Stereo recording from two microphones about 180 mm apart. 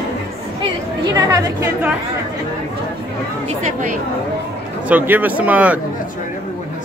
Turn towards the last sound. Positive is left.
turn(degrees=-10)  # may be behind; listen again after turning